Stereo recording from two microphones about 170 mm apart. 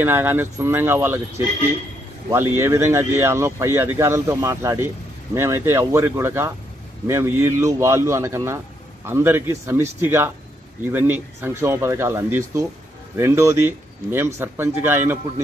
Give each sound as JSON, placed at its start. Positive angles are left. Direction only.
{"t": 0.0, "sound": "speech", "side_deg": -10}
{"t": 2.2, "sound": "speech", "side_deg": -15}